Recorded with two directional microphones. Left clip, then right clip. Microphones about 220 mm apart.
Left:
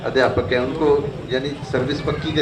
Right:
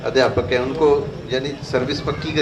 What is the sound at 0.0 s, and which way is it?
A man's voice, 25° right (ahead or behind).